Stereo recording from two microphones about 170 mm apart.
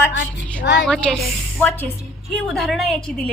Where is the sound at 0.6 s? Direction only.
90° left.